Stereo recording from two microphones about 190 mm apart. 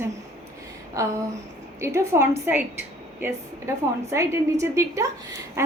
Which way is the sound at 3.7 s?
15° right (ahead or behind).